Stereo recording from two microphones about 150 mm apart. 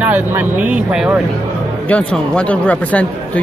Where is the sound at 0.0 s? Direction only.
15° right (ahead or behind).